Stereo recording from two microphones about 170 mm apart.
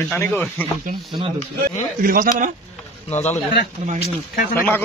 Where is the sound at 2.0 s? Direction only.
55° right (ahead or behind).